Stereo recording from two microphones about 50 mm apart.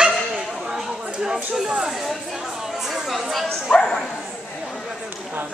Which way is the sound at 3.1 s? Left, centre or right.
Centre.